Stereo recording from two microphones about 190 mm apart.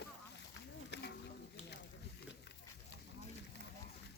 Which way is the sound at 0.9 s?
60° left (ahead or behind).